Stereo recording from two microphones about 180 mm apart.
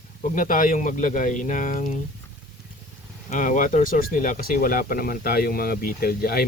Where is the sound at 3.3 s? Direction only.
45° left (ahead or behind).